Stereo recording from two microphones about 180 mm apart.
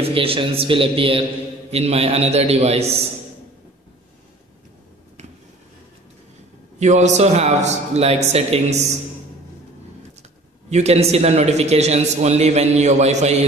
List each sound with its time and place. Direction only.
0.0 s a man's voice: 30° right (ahead or behind)
6.8 s a man's voice: 40° right (ahead or behind)
10.7 s a man's voice: 35° right (ahead or behind)